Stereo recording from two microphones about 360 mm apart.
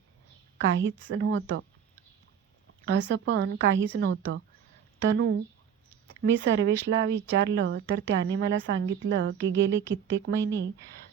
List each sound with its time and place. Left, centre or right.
0.8 s speech: right
2.8 s speech: right